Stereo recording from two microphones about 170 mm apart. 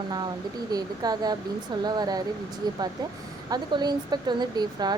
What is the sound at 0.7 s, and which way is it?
Speech, 25° right (ahead or behind).